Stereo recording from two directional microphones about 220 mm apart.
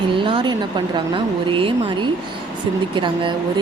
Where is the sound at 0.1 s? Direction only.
25° right (ahead or behind).